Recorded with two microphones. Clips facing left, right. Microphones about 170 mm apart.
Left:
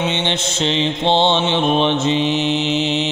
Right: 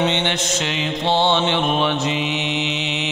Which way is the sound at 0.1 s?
20° left (ahead or behind).